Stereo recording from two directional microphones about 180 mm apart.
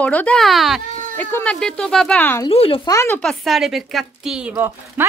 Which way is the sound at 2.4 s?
30° left (ahead or behind).